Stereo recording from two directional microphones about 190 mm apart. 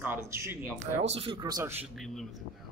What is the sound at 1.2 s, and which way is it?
Speech, 25° right (ahead or behind).